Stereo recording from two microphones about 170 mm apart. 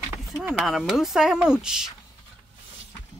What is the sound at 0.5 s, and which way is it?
Speech, centre (ahead or behind).